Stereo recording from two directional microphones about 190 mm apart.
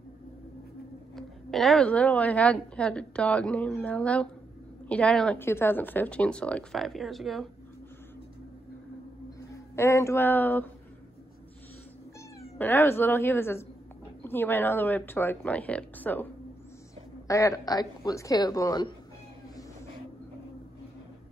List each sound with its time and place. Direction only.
1.1 s a woman's voice: centre (ahead or behind)
9.5 s speech: 15° left (ahead or behind)
12.4 s speech: 15° left (ahead or behind)
17.3 s speech: 15° left (ahead or behind)